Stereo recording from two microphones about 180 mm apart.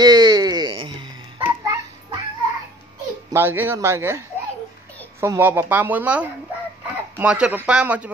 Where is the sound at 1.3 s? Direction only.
10° right (ahead or behind).